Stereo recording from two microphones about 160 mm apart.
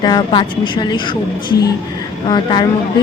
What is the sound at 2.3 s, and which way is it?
Speech, 30° left (ahead or behind).